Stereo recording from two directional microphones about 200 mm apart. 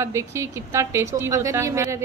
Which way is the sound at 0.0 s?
15° right (ahead or behind).